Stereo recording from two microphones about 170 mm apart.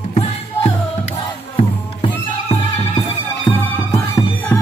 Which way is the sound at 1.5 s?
30° left (ahead or behind).